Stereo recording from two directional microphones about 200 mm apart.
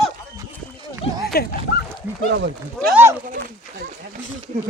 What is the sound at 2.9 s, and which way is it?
Speech, 10° right (ahead or behind).